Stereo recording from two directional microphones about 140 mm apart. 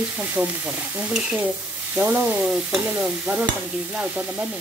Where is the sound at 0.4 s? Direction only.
10° right (ahead or behind).